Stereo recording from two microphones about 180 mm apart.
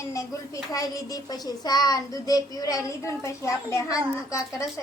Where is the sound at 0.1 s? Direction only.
20° left (ahead or behind).